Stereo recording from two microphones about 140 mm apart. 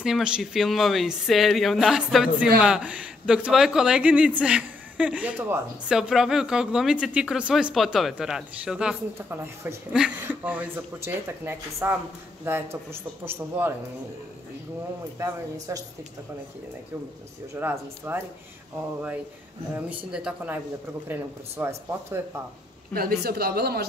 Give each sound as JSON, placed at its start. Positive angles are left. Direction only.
{"t": 0.0, "sound": "speech", "side_deg": -5}
{"t": 9.3, "sound": "speech", "side_deg": -15}
{"t": 15.1, "sound": "speech", "side_deg": -25}
{"t": 17.6, "sound": "speech", "side_deg": -15}
{"t": 19.7, "sound": "speech", "side_deg": -10}
{"t": 22.9, "sound": "speech", "side_deg": -90}